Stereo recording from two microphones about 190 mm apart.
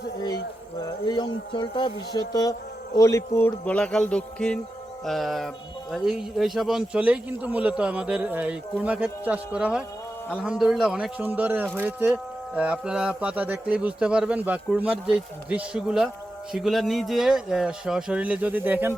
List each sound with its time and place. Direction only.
1.0 s speech: 20° left (ahead or behind); by 18.9 s 10° right (ahead or behind)